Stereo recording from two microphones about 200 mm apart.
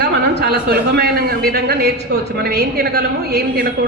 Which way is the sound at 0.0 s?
55° right (ahead or behind).